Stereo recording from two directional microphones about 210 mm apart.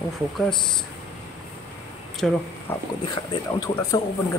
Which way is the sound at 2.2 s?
Centre (ahead or behind).